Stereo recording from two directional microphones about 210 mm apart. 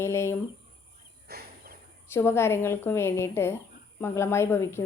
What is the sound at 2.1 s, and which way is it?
A woman's voice, 10° left (ahead or behind).